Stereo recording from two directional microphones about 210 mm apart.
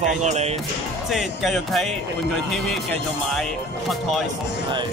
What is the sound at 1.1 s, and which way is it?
Speech, centre (ahead or behind).